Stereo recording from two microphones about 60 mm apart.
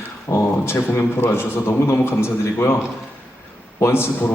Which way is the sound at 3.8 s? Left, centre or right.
Left.